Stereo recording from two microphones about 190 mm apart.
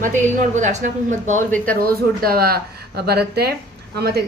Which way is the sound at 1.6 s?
50° right (ahead or behind).